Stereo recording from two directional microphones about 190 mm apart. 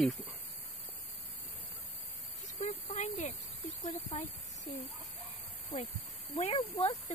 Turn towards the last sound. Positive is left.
turn(degrees=30)  # may be behind; listen again after turning